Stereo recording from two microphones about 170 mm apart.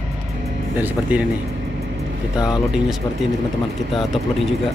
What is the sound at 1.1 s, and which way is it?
Speech, 10° right (ahead or behind).